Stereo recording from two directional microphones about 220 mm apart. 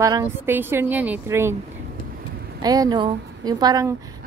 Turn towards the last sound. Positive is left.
turn(degrees=-15)  # may be behind; listen again after turning